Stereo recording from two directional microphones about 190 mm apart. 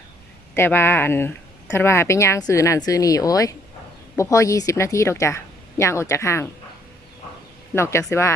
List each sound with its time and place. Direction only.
0.5 s speech: 10° left (ahead or behind)
7.7 s speech: 15° left (ahead or behind)